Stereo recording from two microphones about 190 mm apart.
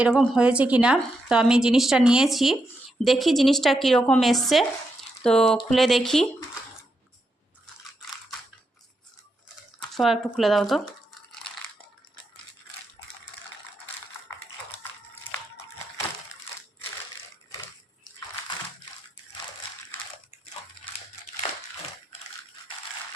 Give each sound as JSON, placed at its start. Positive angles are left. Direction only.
{"t": 0.0, "sound": "speech", "side_deg": -5}
{"t": 9.9, "sound": "speech", "side_deg": 0}
{"t": 14.3, "sound": "typing", "side_deg": 30}